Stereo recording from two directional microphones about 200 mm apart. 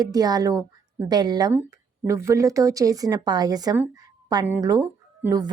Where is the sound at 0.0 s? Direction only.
20° right (ahead or behind).